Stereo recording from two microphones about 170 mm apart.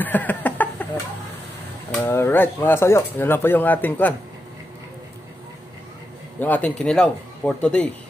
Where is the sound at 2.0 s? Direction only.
10° left (ahead or behind).